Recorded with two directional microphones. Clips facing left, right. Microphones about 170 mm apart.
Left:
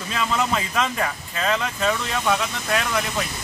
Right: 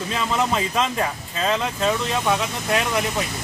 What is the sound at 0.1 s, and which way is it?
Speech, 25° right (ahead or behind).